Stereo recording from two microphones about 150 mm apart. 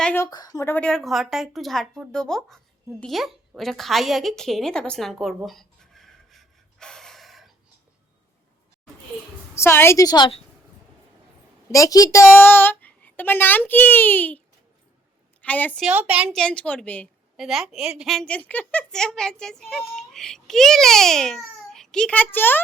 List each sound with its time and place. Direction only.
0.0 s speech: 10° left (ahead or behind)
0.3 s a woman's voice: 25° left (ahead or behind); by 7.5 s centre (ahead or behind)
9.6 s a woman's voice: 15° left (ahead or behind); by 10.4 s 30° left (ahead or behind)
11.7 s a woman's voice: 20° left (ahead or behind)
15.9 s a woman's voice: 10° right (ahead or behind)
16.4 s speech: 5° left (ahead or behind)
17.3 s a woman's voice: centre (ahead or behind)